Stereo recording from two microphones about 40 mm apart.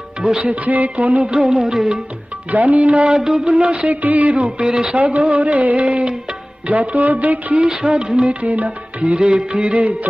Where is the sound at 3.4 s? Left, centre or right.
Right.